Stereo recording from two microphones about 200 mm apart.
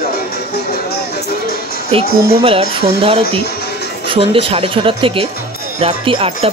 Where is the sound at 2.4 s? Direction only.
25° right (ahead or behind).